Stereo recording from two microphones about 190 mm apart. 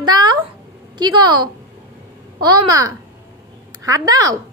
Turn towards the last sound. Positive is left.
turn(degrees=-20)  # may be behind; listen again after turning